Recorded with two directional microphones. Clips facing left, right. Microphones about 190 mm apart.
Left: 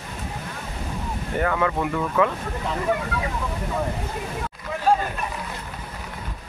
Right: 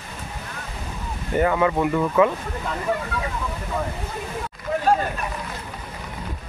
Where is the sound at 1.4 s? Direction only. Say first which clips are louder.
Right 4 dB; 10° right (ahead or behind).